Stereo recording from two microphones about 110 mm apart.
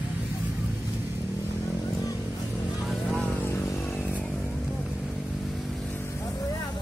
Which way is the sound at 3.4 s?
25° left (ahead or behind).